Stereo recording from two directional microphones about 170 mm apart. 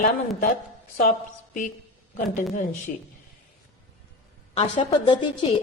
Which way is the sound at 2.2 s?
50° left (ahead or behind).